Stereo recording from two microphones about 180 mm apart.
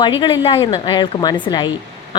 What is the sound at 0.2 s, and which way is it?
Speech, 30° left (ahead or behind).